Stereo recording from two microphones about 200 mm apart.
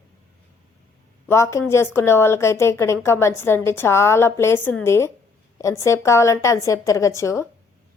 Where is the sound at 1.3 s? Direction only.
15° left (ahead or behind).